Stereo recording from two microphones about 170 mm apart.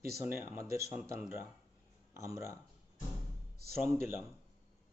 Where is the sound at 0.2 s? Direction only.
15° right (ahead or behind).